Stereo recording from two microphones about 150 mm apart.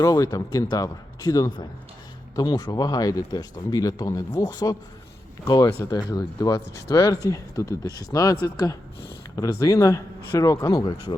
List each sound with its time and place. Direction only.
0.0 s speech: 25° left (ahead or behind)